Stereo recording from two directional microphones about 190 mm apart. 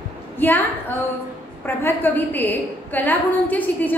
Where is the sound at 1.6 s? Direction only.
10° left (ahead or behind).